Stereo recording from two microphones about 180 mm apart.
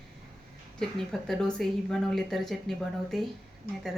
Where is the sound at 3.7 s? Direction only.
55° left (ahead or behind).